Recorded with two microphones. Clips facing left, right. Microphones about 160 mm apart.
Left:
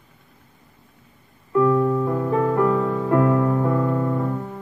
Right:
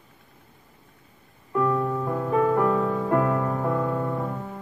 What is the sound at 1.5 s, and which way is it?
Music, centre (ahead or behind).